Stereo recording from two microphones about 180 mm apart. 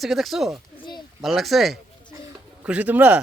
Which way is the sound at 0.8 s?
25° left (ahead or behind).